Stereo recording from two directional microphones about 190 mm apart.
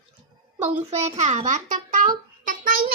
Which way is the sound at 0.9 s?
35° right (ahead or behind).